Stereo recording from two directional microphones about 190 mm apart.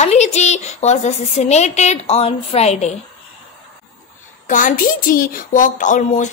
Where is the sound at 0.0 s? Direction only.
35° left (ahead or behind).